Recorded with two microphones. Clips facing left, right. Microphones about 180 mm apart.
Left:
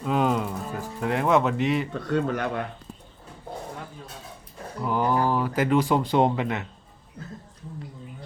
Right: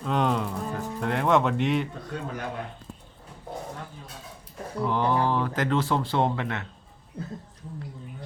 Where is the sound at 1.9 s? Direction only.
75° left (ahead or behind).